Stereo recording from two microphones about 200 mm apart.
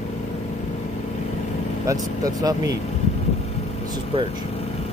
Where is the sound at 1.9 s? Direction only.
15° right (ahead or behind).